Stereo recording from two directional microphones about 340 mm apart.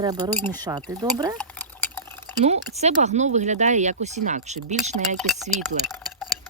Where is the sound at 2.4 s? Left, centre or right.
Centre.